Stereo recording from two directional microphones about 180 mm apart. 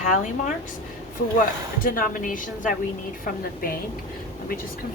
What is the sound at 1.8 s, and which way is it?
A woman's voice, 50° left (ahead or behind).